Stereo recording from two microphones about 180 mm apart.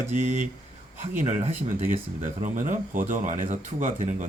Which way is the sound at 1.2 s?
45° right (ahead or behind).